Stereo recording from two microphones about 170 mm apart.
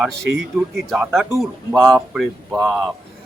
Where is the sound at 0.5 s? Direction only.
Centre (ahead or behind).